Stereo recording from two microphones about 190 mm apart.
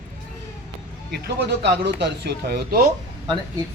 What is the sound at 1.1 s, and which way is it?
Speech, 60° right (ahead or behind).